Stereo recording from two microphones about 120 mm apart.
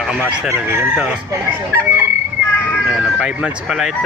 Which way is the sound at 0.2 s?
20° right (ahead or behind).